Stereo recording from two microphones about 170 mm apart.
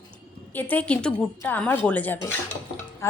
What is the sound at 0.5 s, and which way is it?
A woman's voice, 10° left (ahead or behind).